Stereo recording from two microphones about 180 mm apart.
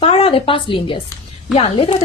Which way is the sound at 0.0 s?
30° left (ahead or behind).